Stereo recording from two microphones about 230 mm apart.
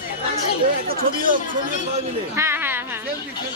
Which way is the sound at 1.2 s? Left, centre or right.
Right.